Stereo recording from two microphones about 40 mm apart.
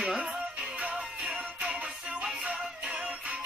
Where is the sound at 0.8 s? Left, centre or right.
Right.